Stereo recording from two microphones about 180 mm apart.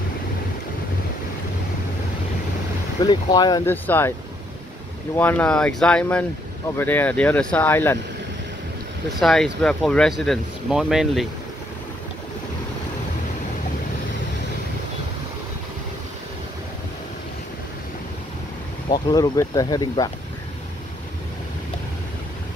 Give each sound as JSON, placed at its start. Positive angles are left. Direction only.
{"t": 3.0, "sound": "speech", "side_deg": 20}
{"t": 3.7, "sound": "speech", "side_deg": 10}
{"t": 5.1, "sound": "speech", "side_deg": 10}
{"t": 9.2, "sound": "speech", "side_deg": 0}
{"t": 18.9, "sound": "speech", "side_deg": 25}